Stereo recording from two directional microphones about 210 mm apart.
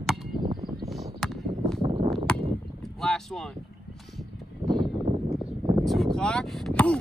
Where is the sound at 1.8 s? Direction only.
25° right (ahead or behind).